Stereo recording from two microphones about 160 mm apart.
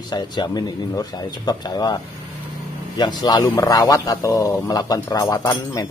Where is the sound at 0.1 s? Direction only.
25° left (ahead or behind).